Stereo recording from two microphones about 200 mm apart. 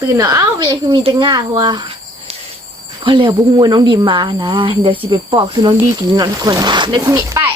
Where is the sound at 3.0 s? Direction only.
25° right (ahead or behind).